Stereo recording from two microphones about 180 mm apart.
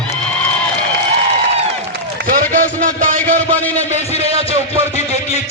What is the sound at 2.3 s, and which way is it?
Speech, 45° right (ahead or behind).